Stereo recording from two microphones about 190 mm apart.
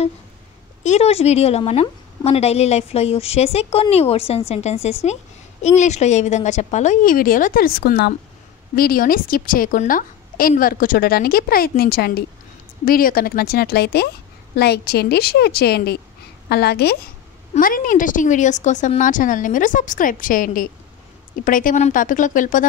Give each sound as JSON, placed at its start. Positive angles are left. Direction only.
{"t": 0.8, "sound": "a woman's voice", "side_deg": 35}
{"t": 17.6, "sound": "a woman's voice", "side_deg": 45}